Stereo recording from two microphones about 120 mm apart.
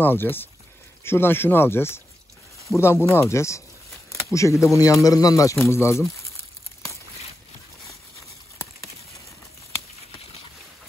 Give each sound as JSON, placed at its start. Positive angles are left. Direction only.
{"t": 0.0, "sound": "speech", "side_deg": 15}